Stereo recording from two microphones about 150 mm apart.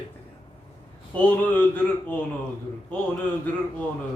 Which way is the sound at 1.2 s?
10° left (ahead or behind).